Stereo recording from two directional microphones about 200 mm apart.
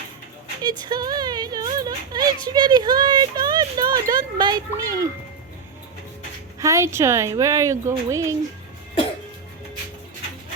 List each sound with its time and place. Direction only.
0.6 s speech: 20° right (ahead or behind)
6.6 s a woman's voice: 15° right (ahead or behind)